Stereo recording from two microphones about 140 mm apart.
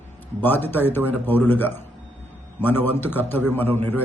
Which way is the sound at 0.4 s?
15° left (ahead or behind).